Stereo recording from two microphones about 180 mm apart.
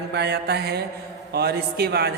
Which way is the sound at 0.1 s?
70° right (ahead or behind).